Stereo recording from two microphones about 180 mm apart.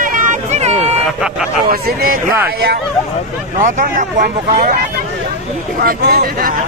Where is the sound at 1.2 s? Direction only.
5° right (ahead or behind).